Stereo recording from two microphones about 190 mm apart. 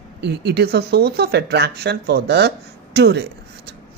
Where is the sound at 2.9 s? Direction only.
60° right (ahead or behind).